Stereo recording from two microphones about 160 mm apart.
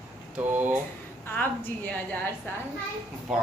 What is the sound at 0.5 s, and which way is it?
Speech, 10° right (ahead or behind).